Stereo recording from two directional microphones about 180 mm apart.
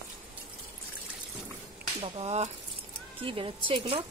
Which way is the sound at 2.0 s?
35° right (ahead or behind).